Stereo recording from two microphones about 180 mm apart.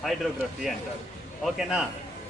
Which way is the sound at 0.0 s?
Centre (ahead or behind).